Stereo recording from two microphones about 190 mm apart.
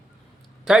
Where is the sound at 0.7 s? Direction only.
Centre (ahead or behind).